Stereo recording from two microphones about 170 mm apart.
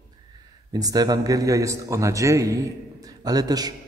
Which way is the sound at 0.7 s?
20° right (ahead or behind).